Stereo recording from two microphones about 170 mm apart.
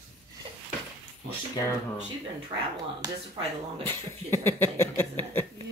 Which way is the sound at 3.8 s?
15° left (ahead or behind).